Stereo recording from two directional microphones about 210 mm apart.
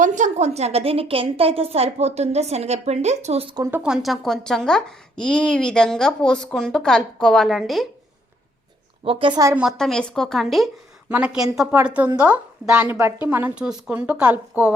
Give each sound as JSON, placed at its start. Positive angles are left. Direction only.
{"t": 0.0, "sound": "a woman's voice", "side_deg": -35}
{"t": 3.6, "sound": "a woman's voice", "side_deg": -10}
{"t": 9.0, "sound": "a woman's voice", "side_deg": -25}
{"t": 9.6, "sound": "a woman's voice", "side_deg": 0}